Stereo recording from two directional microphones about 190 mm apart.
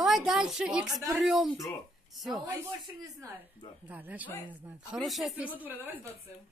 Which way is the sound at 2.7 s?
20° right (ahead or behind).